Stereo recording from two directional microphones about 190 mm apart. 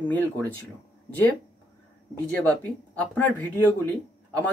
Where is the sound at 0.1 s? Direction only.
10° left (ahead or behind).